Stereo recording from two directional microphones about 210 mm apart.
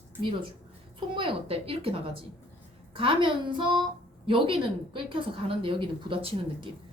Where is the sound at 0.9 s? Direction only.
25° right (ahead or behind).